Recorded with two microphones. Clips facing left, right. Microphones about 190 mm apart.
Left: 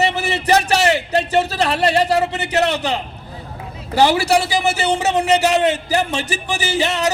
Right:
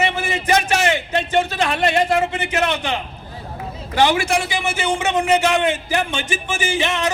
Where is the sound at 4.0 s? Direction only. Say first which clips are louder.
Left 3 dB; 35° left (ahead or behind).